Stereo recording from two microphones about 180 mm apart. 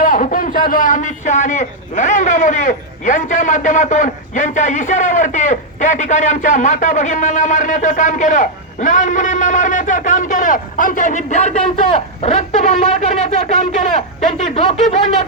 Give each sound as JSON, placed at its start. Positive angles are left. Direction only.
{"t": 0.0, "sound": "speech", "side_deg": 50}